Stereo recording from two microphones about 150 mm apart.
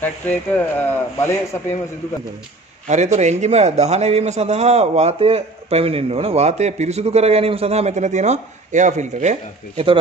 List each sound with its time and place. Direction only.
0.0 s speech: 10° left (ahead or behind)
2.9 s a man's voice: 50° right (ahead or behind)